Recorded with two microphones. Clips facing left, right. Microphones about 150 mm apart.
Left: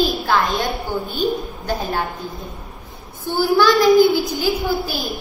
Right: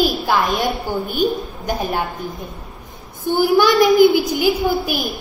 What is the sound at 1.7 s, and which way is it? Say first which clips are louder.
A woman's voice: right 1 dB; 15° right (ahead or behind).